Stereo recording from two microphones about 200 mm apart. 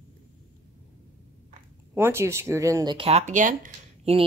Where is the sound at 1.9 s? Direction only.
10° right (ahead or behind).